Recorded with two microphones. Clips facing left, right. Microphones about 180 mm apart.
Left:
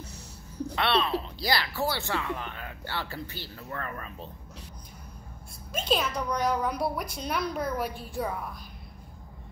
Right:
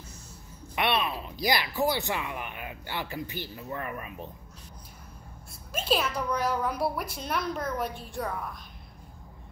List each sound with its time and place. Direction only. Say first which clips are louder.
0.7 s speech: left 1 dB; 15° right (ahead or behind)
5.7 s a child's voice: even; 5° right (ahead or behind)